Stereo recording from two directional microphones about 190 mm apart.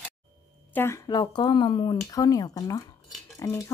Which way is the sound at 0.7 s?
15° left (ahead or behind).